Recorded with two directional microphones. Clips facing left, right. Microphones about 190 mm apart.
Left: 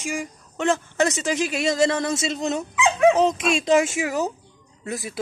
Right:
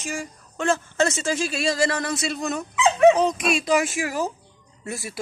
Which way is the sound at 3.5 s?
25° left (ahead or behind).